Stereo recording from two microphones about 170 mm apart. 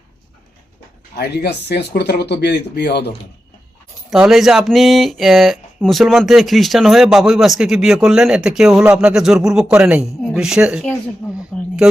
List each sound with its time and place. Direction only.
1.1 s speech: 70° left (ahead or behind)
4.1 s speech: centre (ahead or behind)
11.5 s a sound: 5° left (ahead or behind)